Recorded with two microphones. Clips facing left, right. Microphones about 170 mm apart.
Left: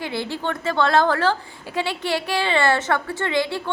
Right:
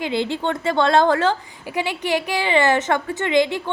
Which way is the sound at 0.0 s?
20° right (ahead or behind).